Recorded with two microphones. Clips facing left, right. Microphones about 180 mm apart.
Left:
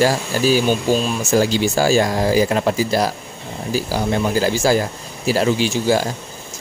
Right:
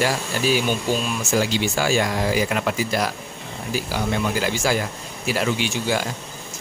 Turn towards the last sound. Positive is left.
turn(degrees=35)  # may be behind; listen again after turning